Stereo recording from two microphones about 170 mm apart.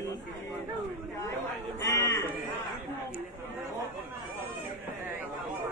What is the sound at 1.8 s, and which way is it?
Livestock, 20° left (ahead or behind).